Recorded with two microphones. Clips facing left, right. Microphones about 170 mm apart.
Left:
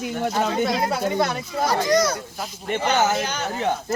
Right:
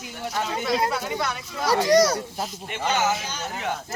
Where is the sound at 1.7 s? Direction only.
35° right (ahead or behind).